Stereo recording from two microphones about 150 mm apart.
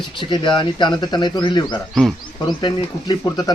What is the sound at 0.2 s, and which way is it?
A man's voice, 30° left (ahead or behind).